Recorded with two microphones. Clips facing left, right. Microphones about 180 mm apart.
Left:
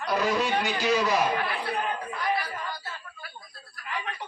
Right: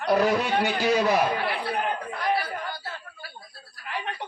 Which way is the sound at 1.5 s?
60° right (ahead or behind).